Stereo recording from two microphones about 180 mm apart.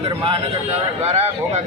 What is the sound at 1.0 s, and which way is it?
Speech, 35° right (ahead or behind).